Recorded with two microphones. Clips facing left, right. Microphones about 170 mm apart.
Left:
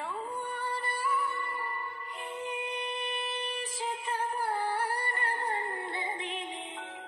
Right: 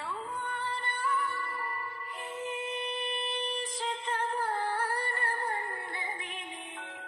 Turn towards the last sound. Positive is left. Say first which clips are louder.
# left 3 dB
turn(degrees=20)  # may be behind; listen again after turning